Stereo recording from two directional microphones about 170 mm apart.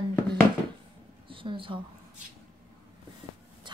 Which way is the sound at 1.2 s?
30° right (ahead or behind).